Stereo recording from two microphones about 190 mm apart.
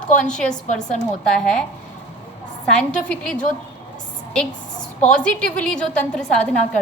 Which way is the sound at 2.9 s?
5° left (ahead or behind).